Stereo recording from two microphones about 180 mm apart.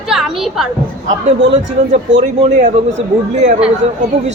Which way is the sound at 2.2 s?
45° right (ahead or behind).